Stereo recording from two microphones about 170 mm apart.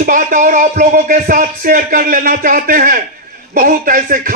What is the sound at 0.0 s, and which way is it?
A man's voice, 50° right (ahead or behind).